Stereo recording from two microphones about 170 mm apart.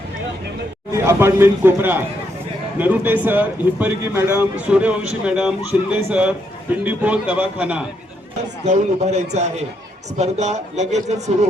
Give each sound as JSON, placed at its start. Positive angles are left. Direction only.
{"t": 0.9, "sound": "a man's voice", "side_deg": -15}
{"t": 8.6, "sound": "speech", "side_deg": -40}